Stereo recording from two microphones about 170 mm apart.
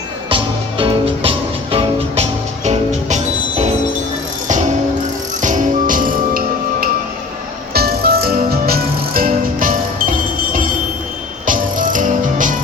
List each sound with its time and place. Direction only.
0.3 s music: 30° right (ahead or behind)
5.4 s music: 50° right (ahead or behind)